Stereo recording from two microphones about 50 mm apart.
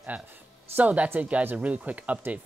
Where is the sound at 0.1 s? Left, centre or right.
Right.